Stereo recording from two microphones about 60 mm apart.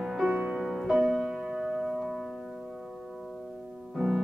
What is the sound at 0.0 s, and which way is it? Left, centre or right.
Music, centre.